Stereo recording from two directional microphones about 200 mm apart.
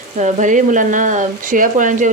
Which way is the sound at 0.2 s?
35° right (ahead or behind).